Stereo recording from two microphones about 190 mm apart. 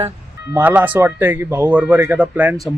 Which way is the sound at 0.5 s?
10° right (ahead or behind).